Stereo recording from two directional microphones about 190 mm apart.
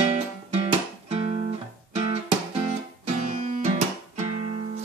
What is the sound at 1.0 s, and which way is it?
Guitar, 35° right (ahead or behind).